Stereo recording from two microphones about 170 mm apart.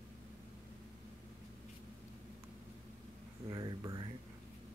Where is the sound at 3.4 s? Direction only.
20° right (ahead or behind).